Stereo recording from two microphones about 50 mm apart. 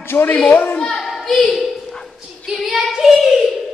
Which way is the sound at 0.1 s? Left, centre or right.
Left.